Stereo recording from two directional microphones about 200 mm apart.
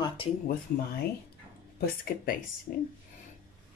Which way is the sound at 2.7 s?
40° left (ahead or behind).